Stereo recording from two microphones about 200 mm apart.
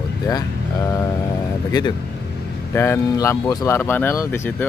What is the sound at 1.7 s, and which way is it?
Speech, 20° left (ahead or behind).